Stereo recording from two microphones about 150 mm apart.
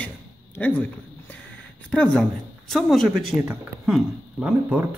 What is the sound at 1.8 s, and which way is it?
A woman's voice, 5° left (ahead or behind).